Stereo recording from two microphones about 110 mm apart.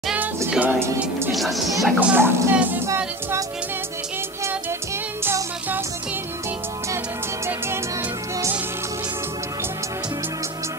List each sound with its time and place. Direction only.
0.5 s speech: 15° right (ahead or behind)
1.3 s speech: centre (ahead or behind)
2.0 s speech: 15° right (ahead or behind)
5.2 s music: 20° right (ahead or behind)